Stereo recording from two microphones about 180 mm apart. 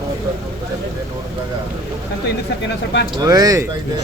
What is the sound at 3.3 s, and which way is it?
Speech, 20° right (ahead or behind).